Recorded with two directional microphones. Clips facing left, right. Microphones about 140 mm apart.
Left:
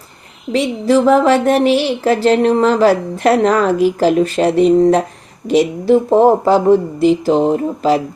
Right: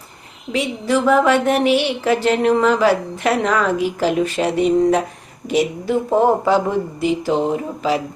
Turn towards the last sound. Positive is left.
turn(degrees=35)  # may be behind; listen again after turning